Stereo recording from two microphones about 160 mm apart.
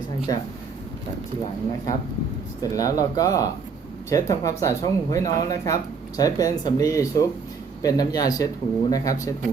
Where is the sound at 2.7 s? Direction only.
20° left (ahead or behind).